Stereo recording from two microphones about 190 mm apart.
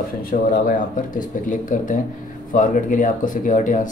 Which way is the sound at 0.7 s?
45° left (ahead or behind).